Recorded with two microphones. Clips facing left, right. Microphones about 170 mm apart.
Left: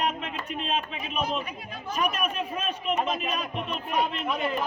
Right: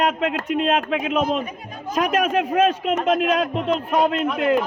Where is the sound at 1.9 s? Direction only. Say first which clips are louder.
Right 8 dB; 90° right.